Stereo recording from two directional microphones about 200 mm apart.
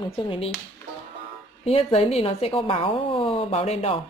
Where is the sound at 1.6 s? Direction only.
30° left (ahead or behind).